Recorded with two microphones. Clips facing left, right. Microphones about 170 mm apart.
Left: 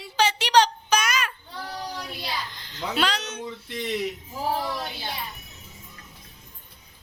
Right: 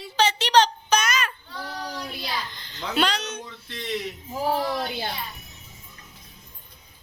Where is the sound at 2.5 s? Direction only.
5° left (ahead or behind).